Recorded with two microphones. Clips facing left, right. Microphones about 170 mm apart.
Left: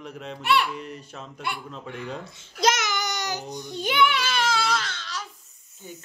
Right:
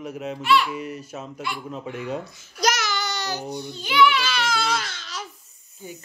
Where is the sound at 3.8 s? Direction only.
50° left (ahead or behind).